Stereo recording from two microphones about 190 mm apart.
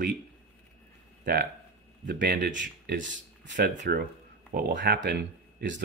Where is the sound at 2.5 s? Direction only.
70° right (ahead or behind).